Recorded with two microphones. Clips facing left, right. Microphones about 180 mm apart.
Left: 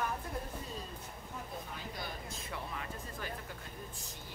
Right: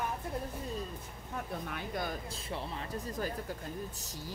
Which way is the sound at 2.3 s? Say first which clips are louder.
Right 3 dB; 30° right (ahead or behind).